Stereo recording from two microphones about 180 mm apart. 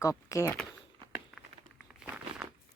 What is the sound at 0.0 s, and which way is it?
Speech, 15° left (ahead or behind).